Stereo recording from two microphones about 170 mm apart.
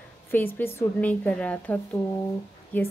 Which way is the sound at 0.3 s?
10° left (ahead or behind).